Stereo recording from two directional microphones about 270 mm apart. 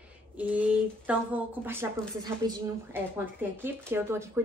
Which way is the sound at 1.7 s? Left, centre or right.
Centre.